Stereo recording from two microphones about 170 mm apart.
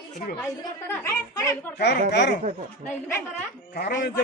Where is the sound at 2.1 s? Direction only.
85° left.